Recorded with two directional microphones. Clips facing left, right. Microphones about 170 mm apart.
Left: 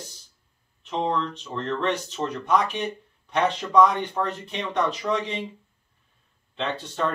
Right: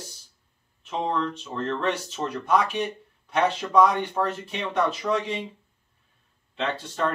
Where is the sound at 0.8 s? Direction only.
5° right (ahead or behind).